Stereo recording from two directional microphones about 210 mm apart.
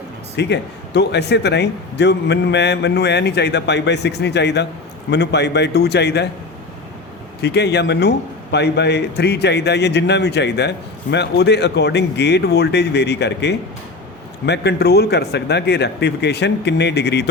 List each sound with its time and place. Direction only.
0.3 s a man's voice: 55° left (ahead or behind)
7.4 s a man's voice: 50° left (ahead or behind)